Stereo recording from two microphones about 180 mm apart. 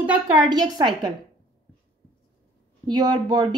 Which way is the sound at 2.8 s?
25° right (ahead or behind).